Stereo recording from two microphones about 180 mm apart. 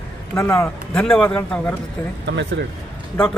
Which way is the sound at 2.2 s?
75° right (ahead or behind).